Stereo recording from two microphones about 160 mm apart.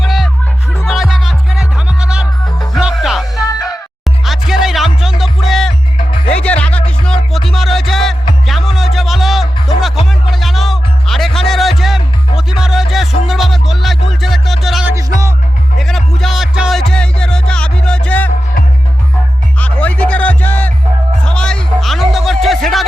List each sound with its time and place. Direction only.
0.0 s music: centre (ahead or behind)
3.3 s music: 20° left (ahead or behind)
4.3 s music: centre (ahead or behind)
19.5 s music: 10° left (ahead or behind)
22.4 s a sound: centre (ahead or behind)